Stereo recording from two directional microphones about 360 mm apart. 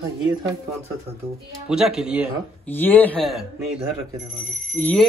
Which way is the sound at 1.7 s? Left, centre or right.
Centre.